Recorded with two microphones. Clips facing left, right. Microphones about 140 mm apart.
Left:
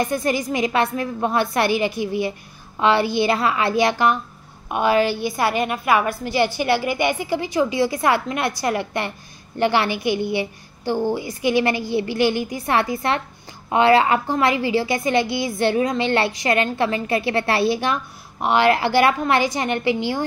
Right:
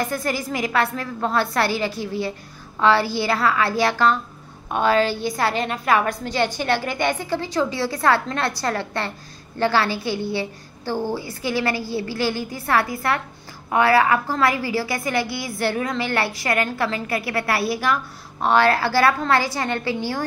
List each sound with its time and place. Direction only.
0.0 s a woman's voice: 20° left (ahead or behind)